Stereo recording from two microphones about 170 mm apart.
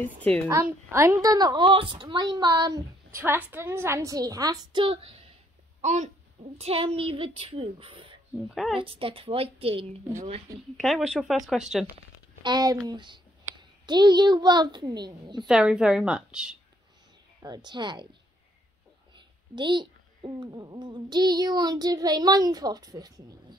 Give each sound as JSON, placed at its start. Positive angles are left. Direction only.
{"t": 0.2, "sound": "a woman's voice", "side_deg": 10}
{"t": 0.5, "sound": "a woman's voice", "side_deg": -15}
{"t": 8.5, "sound": "a woman's voice", "side_deg": 0}
{"t": 8.7, "sound": "a woman's voice", "side_deg": -30}
{"t": 10.8, "sound": "a woman's voice", "side_deg": 0}
{"t": 12.4, "sound": "a woman's voice", "side_deg": -25}
{"t": 15.4, "sound": "a woman's voice", "side_deg": -5}
{"t": 17.4, "sound": "a woman's voice", "side_deg": -25}
{"t": 19.5, "sound": "a woman's voice", "side_deg": -25}